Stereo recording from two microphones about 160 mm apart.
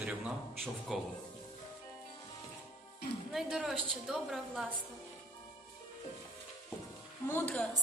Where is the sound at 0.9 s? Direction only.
Centre (ahead or behind).